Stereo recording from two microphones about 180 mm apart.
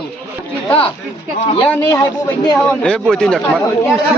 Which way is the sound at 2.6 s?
5° left (ahead or behind).